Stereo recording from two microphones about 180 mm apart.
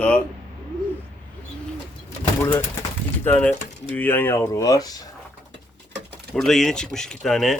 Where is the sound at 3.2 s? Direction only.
10° left (ahead or behind).